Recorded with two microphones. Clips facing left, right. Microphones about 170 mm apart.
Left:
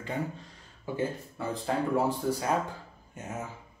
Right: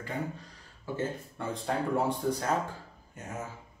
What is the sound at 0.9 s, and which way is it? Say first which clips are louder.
Speech: left 2 dB; 5° left (ahead or behind).